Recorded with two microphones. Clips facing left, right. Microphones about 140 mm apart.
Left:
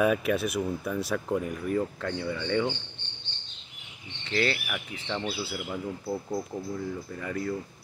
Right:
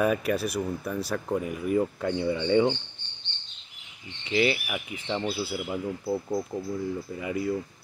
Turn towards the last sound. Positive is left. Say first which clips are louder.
# right 3 dB
turn(degrees=-10)  # may be behind; listen again after turning